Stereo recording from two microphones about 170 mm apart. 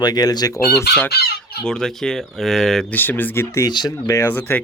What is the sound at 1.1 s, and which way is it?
Chicken, 70° left (ahead or behind).